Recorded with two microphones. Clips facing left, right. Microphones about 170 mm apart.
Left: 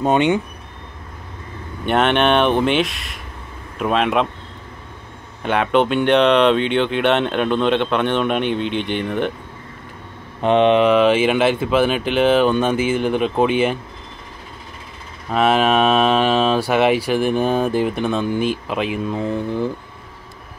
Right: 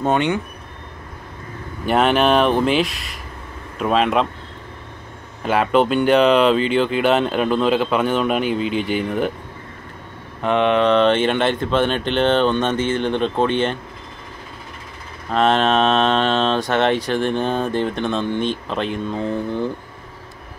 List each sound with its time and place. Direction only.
0.0 s mantra: 20° left (ahead or behind)
1.9 s speech: centre (ahead or behind)
5.4 s speech: centre (ahead or behind)
10.4 s mantra: 20° left (ahead or behind)
10.9 s speech: 5° left (ahead or behind)
15.3 s speech: 10° left (ahead or behind)